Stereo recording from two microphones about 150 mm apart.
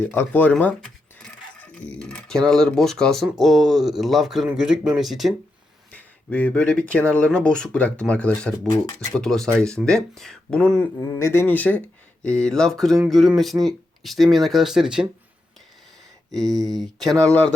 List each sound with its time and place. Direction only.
0.0 s speech: 10° left (ahead or behind)
1.2 s a sound: 5° left (ahead or behind)
3.2 s speech: centre (ahead or behind)
5.9 s speech: 10° left (ahead or behind)
16.3 s speech: centre (ahead or behind)
17.1 s speech: 20° right (ahead or behind)